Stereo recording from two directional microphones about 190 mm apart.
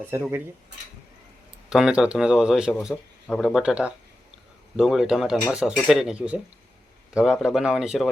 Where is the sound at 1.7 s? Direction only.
5° right (ahead or behind).